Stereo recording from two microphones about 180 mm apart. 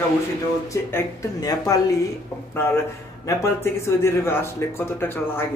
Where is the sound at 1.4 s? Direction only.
20° left (ahead or behind).